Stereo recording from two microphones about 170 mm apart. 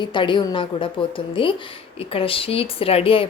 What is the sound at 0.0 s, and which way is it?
Speech, 30° left (ahead or behind).